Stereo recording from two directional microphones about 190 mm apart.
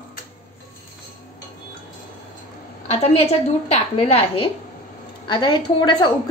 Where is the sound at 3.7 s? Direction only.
30° left (ahead or behind).